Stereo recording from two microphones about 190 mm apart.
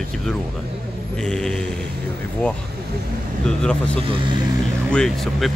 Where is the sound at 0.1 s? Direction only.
Centre (ahead or behind).